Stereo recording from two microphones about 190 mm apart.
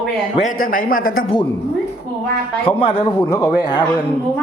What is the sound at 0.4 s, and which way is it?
Speech, 45° left (ahead or behind).